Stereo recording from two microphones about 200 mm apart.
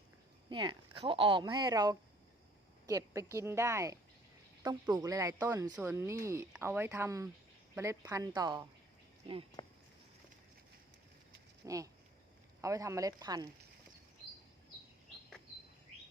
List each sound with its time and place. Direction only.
0.5 s speech: 25° right (ahead or behind)
11.6 s speech: 15° right (ahead or behind)